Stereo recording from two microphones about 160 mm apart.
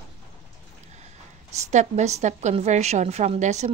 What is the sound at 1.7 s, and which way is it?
A woman's voice, 45° right (ahead or behind).